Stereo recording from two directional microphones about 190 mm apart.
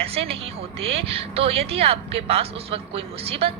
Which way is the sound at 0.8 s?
30° right (ahead or behind).